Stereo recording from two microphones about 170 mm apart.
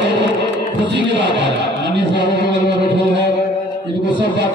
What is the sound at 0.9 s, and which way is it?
Speech, 90° right.